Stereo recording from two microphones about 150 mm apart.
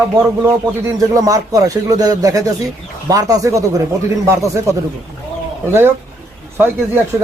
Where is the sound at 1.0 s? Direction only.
25° right (ahead or behind).